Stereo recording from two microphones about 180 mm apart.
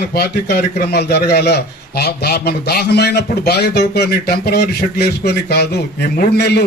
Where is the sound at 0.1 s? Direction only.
60° left (ahead or behind).